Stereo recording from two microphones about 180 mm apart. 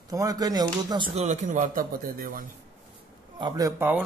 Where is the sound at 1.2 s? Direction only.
40° right (ahead or behind).